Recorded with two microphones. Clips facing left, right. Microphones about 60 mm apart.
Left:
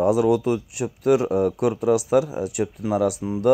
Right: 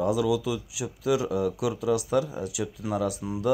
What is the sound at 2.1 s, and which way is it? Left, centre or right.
Speech, left.